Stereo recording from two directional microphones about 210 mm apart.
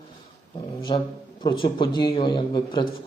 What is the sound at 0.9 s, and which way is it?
Speech, 25° left (ahead or behind).